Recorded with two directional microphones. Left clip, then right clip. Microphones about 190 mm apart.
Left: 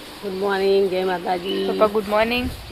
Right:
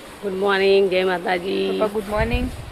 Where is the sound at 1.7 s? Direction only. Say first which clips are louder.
Left 4 dB; 40° left (ahead or behind).